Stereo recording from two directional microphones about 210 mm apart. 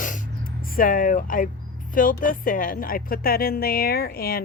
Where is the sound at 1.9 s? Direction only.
40° left (ahead or behind).